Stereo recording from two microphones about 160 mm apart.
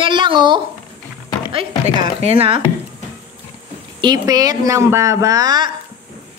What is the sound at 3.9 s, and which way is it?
A woman's voice, 25° right (ahead or behind).